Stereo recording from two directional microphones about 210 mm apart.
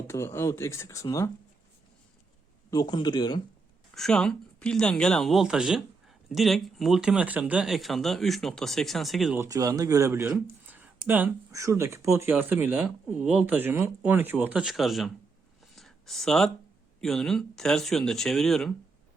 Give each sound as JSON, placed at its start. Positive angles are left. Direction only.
{"t": 0.1, "sound": "speech", "side_deg": 10}
{"t": 2.6, "sound": "speech", "side_deg": 20}
{"t": 3.9, "sound": "speech", "side_deg": 5}
{"t": 9.4, "sound": "speech", "side_deg": -15}
{"t": 15.6, "sound": "a sound", "side_deg": 0}
{"t": 17.0, "sound": "speech", "side_deg": 0}